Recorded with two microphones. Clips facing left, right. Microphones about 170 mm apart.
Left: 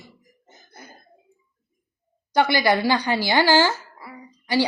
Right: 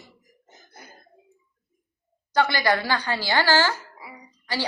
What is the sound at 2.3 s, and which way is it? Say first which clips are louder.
A woman's voice: left 3 dB; 15° left (ahead or behind).